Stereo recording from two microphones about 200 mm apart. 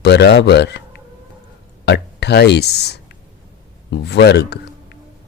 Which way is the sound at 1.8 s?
55° left (ahead or behind).